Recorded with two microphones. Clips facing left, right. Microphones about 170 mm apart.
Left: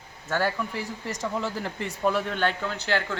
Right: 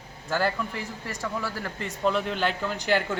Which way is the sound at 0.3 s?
Centre (ahead or behind).